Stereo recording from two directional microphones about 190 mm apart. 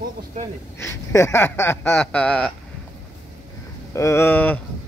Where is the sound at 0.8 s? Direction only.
15° left (ahead or behind).